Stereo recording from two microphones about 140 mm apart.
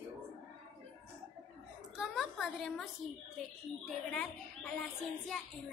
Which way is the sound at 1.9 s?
5° right (ahead or behind).